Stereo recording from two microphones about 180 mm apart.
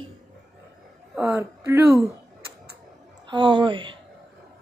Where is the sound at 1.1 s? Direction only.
5° right (ahead or behind).